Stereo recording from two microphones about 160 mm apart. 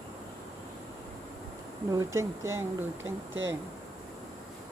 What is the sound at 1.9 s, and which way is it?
Speech, 20° right (ahead or behind).